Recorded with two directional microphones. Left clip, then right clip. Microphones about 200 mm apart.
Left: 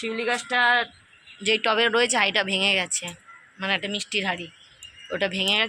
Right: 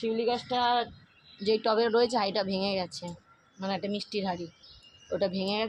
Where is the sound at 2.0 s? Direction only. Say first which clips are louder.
Left 6 dB; centre (ahead or behind).